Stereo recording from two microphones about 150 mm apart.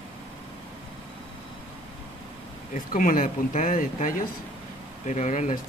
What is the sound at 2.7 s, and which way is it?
Speech, 65° left (ahead or behind).